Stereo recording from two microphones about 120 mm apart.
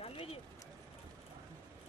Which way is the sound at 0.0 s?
55° left (ahead or behind).